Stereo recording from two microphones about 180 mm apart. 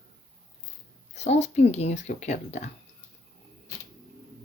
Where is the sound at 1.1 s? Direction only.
40° left (ahead or behind).